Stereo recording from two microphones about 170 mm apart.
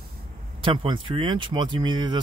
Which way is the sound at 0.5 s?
30° right (ahead or behind).